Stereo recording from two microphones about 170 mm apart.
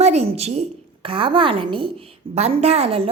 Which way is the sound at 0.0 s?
40° right (ahead or behind).